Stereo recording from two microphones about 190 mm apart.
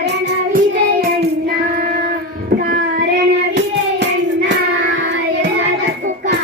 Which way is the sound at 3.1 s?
65° right (ahead or behind).